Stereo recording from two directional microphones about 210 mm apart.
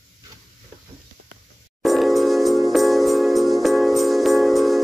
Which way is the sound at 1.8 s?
Centre (ahead or behind).